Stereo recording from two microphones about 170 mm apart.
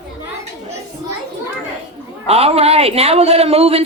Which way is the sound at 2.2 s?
35° right (ahead or behind).